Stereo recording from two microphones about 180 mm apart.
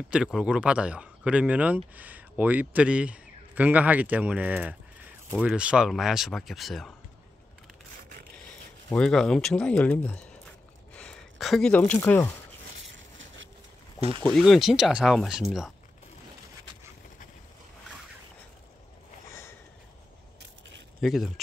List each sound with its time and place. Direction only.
0.1 s speech: 5° right (ahead or behind)
8.9 s speech: 5° left (ahead or behind)
11.0 s a sound: 5° left (ahead or behind)
11.8 s speech: 15° left (ahead or behind)
12.9 s a sound: 90° right
14.2 s speech: centre (ahead or behind)
21.0 s speech: centre (ahead or behind)